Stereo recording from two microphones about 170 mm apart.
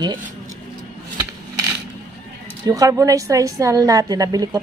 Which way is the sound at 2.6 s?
20° right (ahead or behind).